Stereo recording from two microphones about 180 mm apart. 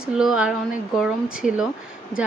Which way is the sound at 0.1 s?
5° right (ahead or behind).